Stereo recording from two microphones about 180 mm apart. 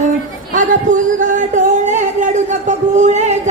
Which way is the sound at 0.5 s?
45° right (ahead or behind).